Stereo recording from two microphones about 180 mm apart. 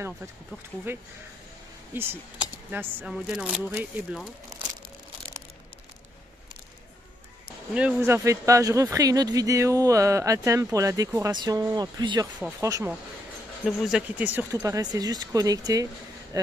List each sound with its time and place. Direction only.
0.9 s speech: 10° right (ahead or behind)
7.4 s speech: 5° right (ahead or behind); by 12.3 s 25° right (ahead or behind)
12.4 s speech: 5° right (ahead or behind)
12.6 s speech: 15° right (ahead or behind)
13.7 s speech: 5° right (ahead or behind); by 15.9 s 20° right (ahead or behind)